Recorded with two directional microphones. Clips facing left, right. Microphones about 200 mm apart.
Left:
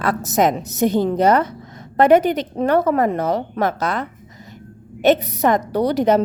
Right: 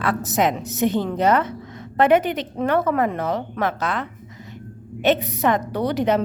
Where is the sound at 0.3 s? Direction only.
40° left (ahead or behind).